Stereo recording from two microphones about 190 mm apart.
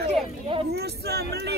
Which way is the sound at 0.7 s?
60° right (ahead or behind).